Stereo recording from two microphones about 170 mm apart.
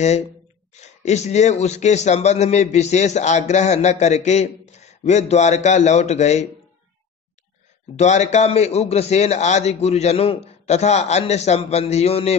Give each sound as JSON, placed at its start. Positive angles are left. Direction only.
{"t": 0.7, "sound": "a man's voice", "side_deg": 40}
{"t": 7.9, "sound": "a man's voice", "side_deg": 40}